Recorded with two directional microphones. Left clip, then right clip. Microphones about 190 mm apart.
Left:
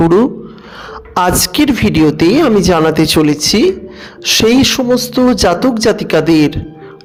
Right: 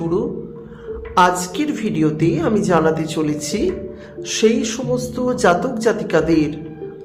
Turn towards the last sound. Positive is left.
turn(degrees=45)  # may be behind; listen again after turning